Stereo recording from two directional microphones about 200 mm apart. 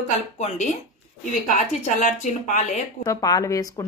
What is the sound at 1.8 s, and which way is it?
Speech, 40° left (ahead or behind).